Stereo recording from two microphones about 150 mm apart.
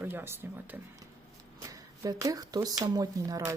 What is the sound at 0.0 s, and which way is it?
Speech, 15° right (ahead or behind).